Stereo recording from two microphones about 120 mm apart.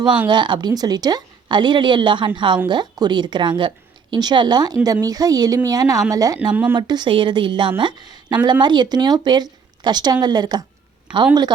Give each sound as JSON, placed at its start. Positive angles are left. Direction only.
{"t": 0.3, "sound": "a woman's voice", "side_deg": -40}
{"t": 6.5, "sound": "speech", "side_deg": -10}
{"t": 6.7, "sound": "a woman's voice", "side_deg": -40}